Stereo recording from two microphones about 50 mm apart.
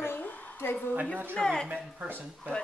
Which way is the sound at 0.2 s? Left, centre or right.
Left.